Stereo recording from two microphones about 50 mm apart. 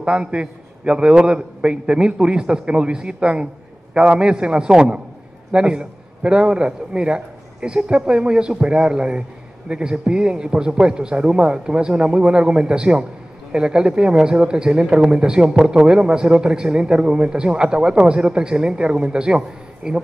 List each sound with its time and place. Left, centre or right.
0.0 s a man's voice: centre